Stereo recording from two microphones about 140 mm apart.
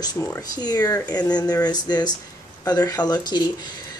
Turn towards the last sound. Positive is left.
turn(degrees=30)  # may be behind; listen again after turning